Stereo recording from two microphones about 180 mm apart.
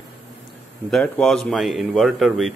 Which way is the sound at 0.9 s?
5° left (ahead or behind).